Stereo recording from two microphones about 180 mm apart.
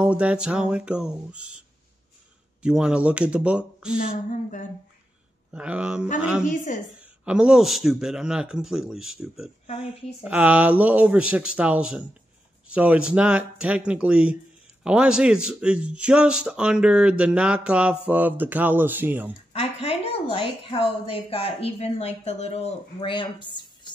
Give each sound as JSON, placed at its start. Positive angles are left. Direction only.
{"t": 0.0, "sound": "speech", "side_deg": -5}
{"t": 2.6, "sound": "speech", "side_deg": -5}
{"t": 4.3, "sound": "a woman's voice", "side_deg": 45}
{"t": 5.5, "sound": "speech", "side_deg": -5}
{"t": 6.4, "sound": "a woman's voice", "side_deg": 45}
{"t": 7.0, "sound": "a man's voice", "side_deg": -5}
{"t": 19.5, "sound": "a woman's voice", "side_deg": 35}